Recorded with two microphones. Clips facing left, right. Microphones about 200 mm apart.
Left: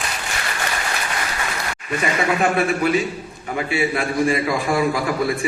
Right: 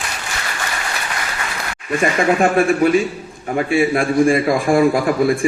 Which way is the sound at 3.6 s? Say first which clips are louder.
Right 5 dB; 50° right (ahead or behind).